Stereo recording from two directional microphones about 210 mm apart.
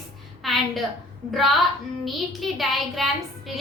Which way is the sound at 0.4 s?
Centre (ahead or behind).